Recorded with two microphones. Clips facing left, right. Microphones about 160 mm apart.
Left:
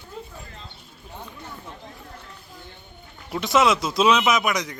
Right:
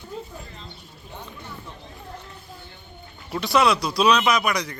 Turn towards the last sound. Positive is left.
turn(degrees=20)  # may be behind; listen again after turning